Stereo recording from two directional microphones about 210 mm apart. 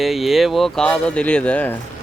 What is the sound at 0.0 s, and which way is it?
Speech, centre (ahead or behind).